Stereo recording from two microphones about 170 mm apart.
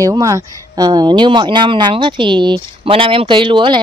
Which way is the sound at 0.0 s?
20° right (ahead or behind).